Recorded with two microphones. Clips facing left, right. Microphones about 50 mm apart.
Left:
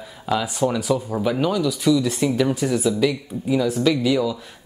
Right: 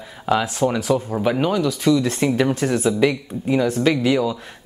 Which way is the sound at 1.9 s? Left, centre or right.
Right.